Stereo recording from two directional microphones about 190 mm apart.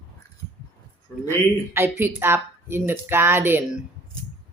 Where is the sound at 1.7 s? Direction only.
10° right (ahead or behind).